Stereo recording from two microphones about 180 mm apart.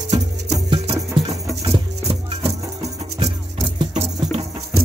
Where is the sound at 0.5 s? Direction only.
25° right (ahead or behind).